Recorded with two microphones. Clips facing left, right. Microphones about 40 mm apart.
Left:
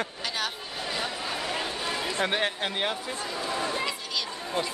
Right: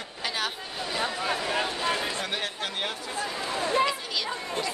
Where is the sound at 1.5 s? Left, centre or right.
Right.